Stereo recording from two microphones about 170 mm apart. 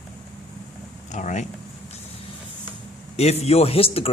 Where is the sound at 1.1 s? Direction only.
45° left (ahead or behind).